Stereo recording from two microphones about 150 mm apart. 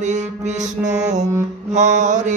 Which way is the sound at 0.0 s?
50° right (ahead or behind).